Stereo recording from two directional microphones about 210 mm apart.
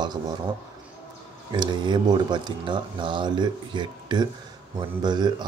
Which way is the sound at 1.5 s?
20° right (ahead or behind).